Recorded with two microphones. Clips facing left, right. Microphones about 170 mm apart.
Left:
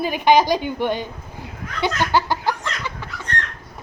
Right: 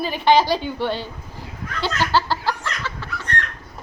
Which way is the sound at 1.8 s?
15° left (ahead or behind).